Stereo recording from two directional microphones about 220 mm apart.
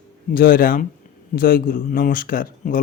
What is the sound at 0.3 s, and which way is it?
A man's voice, 40° left (ahead or behind).